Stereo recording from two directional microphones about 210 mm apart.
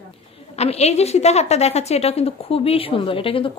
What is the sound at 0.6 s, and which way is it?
A woman's voice, 30° left (ahead or behind).